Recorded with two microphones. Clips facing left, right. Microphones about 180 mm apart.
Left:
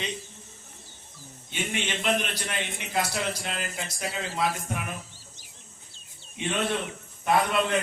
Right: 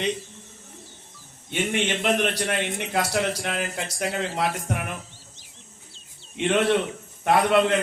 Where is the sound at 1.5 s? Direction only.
55° right (ahead or behind).